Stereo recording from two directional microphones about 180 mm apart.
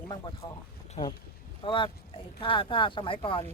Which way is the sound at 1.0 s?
35° left (ahead or behind).